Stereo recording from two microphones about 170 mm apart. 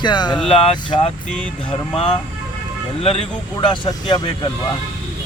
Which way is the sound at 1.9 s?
35° left (ahead or behind).